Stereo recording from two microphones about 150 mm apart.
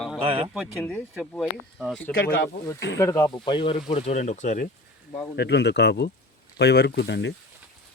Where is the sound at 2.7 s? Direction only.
20° left (ahead or behind).